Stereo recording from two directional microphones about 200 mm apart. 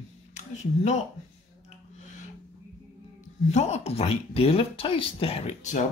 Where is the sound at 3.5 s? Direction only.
35° left (ahead or behind).